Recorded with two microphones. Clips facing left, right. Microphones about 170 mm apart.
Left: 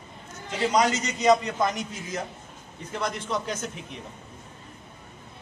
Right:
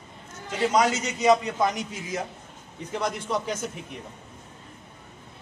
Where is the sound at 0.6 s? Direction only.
5° right (ahead or behind).